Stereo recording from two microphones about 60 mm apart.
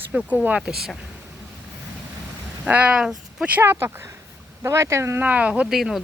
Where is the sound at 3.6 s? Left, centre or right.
Right.